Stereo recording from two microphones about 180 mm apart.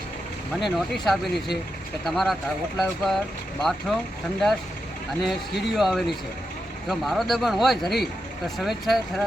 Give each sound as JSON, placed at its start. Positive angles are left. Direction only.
{"t": 0.6, "sound": "speech", "side_deg": 0}
{"t": 5.2, "sound": "speech", "side_deg": 0}